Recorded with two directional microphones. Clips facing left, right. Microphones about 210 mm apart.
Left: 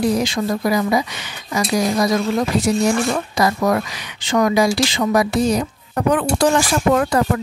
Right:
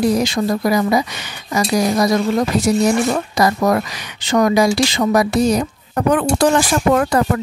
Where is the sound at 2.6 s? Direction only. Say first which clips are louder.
Right 2 dB; 40° right (ahead or behind).